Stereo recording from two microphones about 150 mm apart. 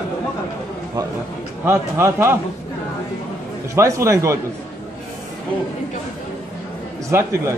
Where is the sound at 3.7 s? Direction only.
20° right (ahead or behind).